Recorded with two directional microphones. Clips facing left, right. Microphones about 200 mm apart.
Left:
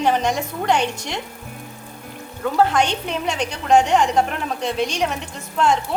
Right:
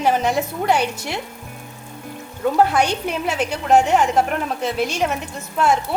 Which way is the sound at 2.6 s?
10° right (ahead or behind).